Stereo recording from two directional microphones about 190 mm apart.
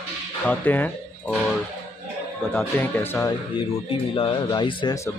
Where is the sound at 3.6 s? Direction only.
30° left (ahead or behind).